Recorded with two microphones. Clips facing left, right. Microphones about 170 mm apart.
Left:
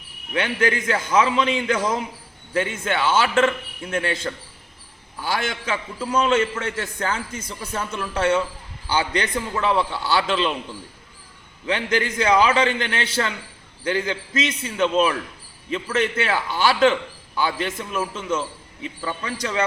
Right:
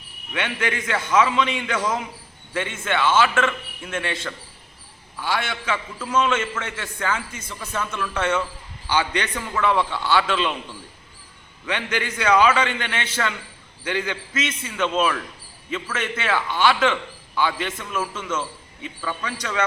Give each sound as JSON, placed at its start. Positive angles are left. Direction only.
{"t": 0.3, "sound": "a man's voice", "side_deg": 35}
{"t": 11.6, "sound": "a man's voice", "side_deg": 35}
{"t": 14.3, "sound": "a man's voice", "side_deg": 35}